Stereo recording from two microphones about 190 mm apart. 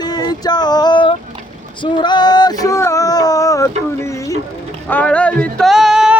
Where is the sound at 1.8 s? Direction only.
25° left (ahead or behind).